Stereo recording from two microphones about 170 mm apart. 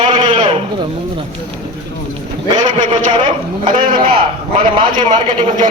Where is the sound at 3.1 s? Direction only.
30° right (ahead or behind).